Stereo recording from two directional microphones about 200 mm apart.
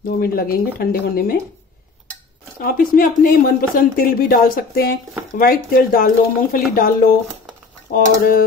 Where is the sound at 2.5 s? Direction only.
45° left (ahead or behind).